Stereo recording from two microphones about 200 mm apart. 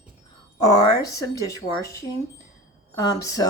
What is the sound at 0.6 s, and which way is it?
Speech, 15° left (ahead or behind).